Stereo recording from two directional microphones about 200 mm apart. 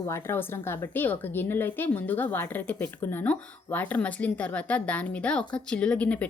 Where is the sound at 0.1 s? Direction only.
10° left (ahead or behind).